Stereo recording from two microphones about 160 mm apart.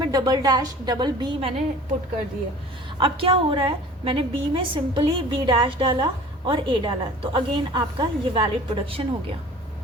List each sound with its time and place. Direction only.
0.0 s a woman's voice: 25° right (ahead or behind)
3.0 s a woman's voice: 35° right (ahead or behind)